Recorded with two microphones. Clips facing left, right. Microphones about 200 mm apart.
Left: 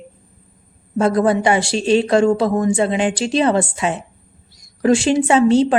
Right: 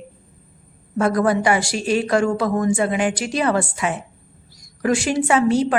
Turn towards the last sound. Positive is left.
turn(degrees=25)  # may be behind; listen again after turning